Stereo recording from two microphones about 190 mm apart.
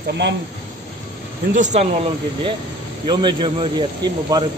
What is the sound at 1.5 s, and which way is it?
Speech, 40° right (ahead or behind).